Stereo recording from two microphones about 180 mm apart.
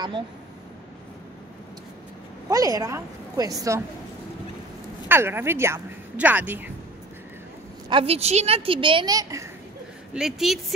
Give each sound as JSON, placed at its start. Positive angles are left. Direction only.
{"t": 2.5, "sound": "a woman's voice", "side_deg": -20}
{"t": 5.0, "sound": "speech", "side_deg": -10}
{"t": 7.9, "sound": "a woman's voice", "side_deg": -35}
{"t": 10.1, "sound": "a woman's voice", "side_deg": 0}